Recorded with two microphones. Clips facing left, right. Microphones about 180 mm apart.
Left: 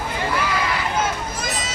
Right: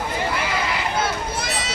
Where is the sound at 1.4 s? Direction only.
70° right (ahead or behind).